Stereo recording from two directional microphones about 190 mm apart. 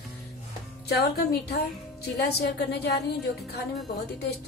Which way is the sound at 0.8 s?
60° left (ahead or behind).